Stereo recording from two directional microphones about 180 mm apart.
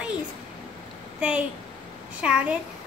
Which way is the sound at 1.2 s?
5° right (ahead or behind).